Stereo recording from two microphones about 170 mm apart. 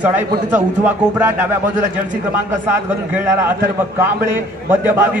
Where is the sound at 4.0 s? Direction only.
10° right (ahead or behind).